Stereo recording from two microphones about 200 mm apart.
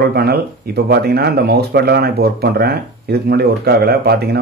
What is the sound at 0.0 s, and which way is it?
Speech, 50° right (ahead or behind).